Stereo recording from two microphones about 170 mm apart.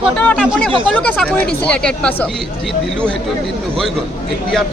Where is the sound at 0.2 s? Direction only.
5° left (ahead or behind).